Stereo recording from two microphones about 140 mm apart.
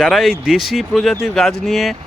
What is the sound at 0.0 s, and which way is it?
Speech, centre (ahead or behind).